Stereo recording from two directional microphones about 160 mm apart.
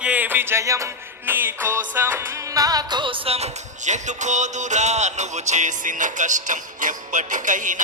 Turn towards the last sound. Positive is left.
turn(degrees=-55)  # may be behind; listen again after turning